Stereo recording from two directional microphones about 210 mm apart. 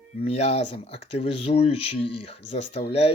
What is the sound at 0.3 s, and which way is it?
Speech, 30° left (ahead or behind).